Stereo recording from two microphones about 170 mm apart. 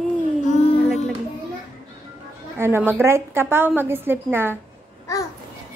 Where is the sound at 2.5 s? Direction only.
15° right (ahead or behind).